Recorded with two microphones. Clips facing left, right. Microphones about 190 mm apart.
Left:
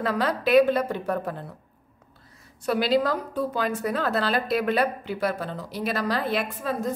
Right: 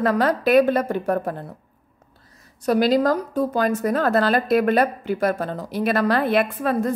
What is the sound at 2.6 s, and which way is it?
Speech, 45° right (ahead or behind).